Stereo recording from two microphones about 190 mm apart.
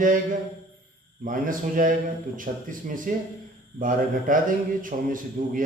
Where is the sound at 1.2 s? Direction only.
45° right (ahead or behind).